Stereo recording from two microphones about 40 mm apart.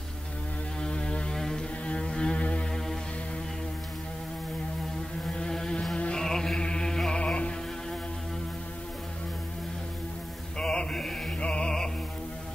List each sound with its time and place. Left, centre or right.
0.7 s mains hum: left
1.3 s music: centre
5.5 s a sound: centre
6.1 s chant: centre
7.1 s music: left
10.6 s chant: left
11.3 s music: left